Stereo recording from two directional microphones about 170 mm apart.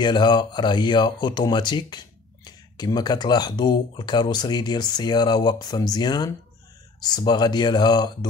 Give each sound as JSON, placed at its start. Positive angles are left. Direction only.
{"t": 0.0, "sound": "speech", "side_deg": 25}